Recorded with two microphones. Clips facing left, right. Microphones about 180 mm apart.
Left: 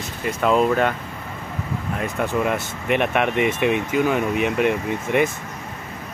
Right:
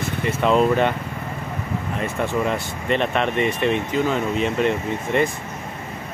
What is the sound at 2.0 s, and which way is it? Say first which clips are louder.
Speech: even; centre (ahead or behind).